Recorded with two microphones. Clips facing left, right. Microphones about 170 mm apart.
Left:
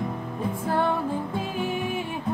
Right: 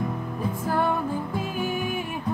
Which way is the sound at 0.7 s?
30° left (ahead or behind).